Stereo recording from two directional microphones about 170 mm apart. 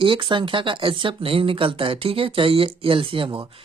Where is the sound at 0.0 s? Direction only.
30° right (ahead or behind).